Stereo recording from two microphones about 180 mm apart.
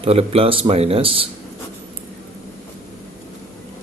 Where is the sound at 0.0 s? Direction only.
35° right (ahead or behind).